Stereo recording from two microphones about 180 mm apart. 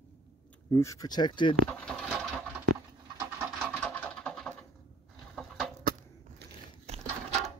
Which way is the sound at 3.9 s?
5° left (ahead or behind).